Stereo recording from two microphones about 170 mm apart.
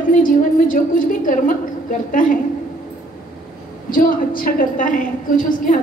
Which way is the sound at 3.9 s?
55° left (ahead or behind).